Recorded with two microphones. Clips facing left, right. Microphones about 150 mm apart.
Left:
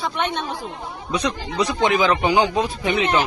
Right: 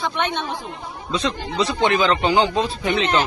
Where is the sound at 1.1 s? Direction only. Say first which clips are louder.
Even; 15° left (ahead or behind).